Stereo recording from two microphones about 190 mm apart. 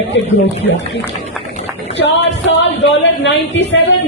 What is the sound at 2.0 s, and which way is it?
A woman's voice, 70° left (ahead or behind).